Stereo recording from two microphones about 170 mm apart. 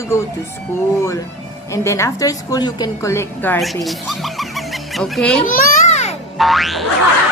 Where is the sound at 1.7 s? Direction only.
15° left (ahead or behind).